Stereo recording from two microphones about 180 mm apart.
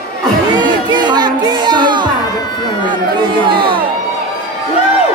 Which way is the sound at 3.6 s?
30° right (ahead or behind).